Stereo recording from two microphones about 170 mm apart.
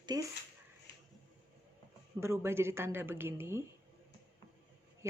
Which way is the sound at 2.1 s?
15° right (ahead or behind).